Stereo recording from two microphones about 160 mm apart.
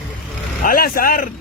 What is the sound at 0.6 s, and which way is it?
Speech, 65° left (ahead or behind).